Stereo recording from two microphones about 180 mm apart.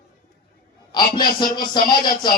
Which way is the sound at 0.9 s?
25° left (ahead or behind).